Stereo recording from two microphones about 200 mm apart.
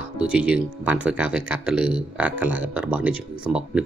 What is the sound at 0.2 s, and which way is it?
Speech, 5° right (ahead or behind).